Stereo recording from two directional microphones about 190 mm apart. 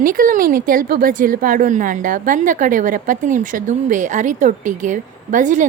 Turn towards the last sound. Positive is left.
turn(degrees=-40)  # may be behind; listen again after turning